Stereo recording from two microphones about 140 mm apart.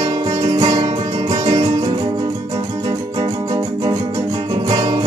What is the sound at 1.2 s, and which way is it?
Music, 50° right (ahead or behind).